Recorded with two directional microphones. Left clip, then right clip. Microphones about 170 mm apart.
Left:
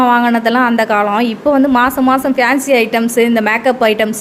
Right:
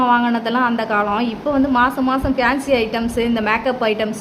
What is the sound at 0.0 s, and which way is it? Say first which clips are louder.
A woman's voice: left 5 dB; 25° left (ahead or behind).